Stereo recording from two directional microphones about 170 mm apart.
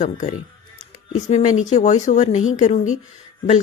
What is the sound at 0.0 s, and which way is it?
Speech, 45° left (ahead or behind).